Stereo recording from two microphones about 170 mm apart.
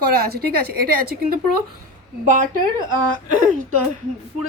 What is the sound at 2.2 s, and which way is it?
Speech, 50° right (ahead or behind).